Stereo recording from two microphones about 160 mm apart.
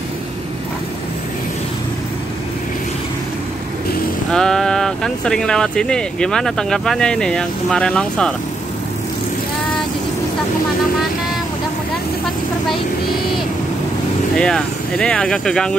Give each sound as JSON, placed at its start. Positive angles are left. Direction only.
{"t": 4.3, "sound": "speech", "side_deg": 5}
{"t": 14.3, "sound": "speech", "side_deg": 5}